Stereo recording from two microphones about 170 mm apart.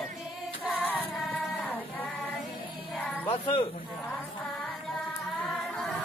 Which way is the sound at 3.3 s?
30° left (ahead or behind).